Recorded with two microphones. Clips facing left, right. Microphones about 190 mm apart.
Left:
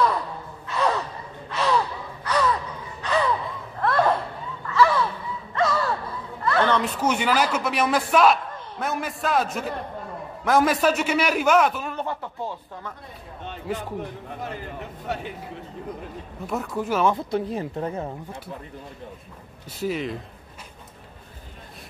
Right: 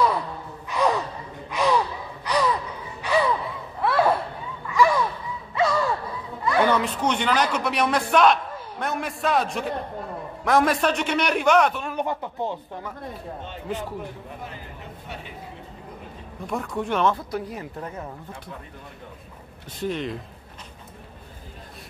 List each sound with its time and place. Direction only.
0.7 s gasp: 15° right (ahead or behind)
3.8 s a sound: 5° right (ahead or behind)
4.6 s gasp: 15° right (ahead or behind)
5.5 s a sound: 10° right (ahead or behind)
6.8 s a man's voice: 5° left (ahead or behind)
11.9 s speech: 15° right (ahead or behind)
16.4 s a man's voice: centre (ahead or behind)
17.1 s speech: 25° left (ahead or behind)
19.8 s a man's voice: 5° left (ahead or behind)